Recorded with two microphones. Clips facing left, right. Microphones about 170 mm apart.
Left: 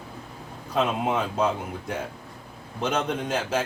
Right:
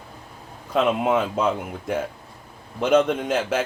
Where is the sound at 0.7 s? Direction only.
55° right (ahead or behind).